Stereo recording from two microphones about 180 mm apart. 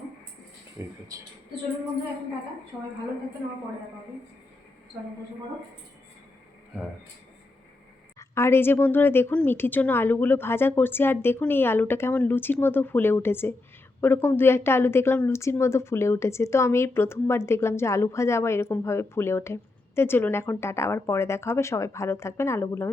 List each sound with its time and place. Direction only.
0.8 s speech: 15° right (ahead or behind)
8.2 s a woman's voice: 15° left (ahead or behind)